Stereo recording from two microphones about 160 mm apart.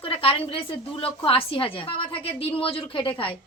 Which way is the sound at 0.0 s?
35° left (ahead or behind).